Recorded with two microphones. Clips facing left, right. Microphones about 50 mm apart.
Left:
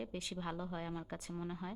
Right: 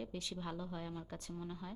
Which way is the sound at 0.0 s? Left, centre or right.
Centre.